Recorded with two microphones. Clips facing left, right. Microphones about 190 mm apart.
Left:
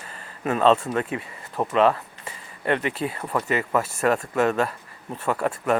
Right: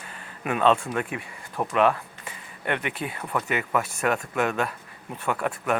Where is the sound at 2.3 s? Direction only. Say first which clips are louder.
Left 5 dB; 5° right (ahead or behind).